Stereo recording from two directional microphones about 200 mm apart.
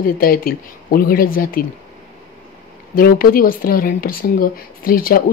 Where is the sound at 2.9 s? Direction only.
45° left (ahead or behind).